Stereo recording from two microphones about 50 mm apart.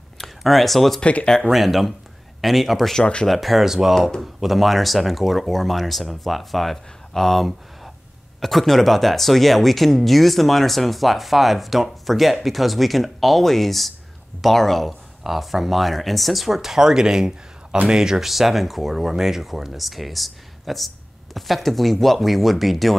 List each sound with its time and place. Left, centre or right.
0.4 s speech: centre
3.0 s speech: centre
3.3 s speech: centre